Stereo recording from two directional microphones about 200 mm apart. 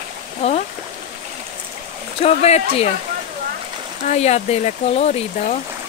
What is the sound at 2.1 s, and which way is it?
Speech, 30° left (ahead or behind).